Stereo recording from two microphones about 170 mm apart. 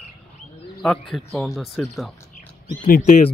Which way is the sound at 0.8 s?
Centre (ahead or behind).